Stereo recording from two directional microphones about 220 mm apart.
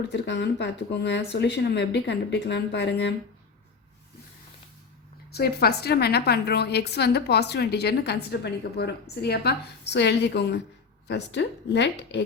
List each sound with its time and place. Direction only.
0.1 s a woman's voice: 50° left (ahead or behind)
5.3 s a woman's voice: 45° left (ahead or behind)